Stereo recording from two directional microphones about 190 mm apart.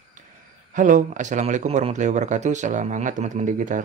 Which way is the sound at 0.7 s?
40° right (ahead or behind).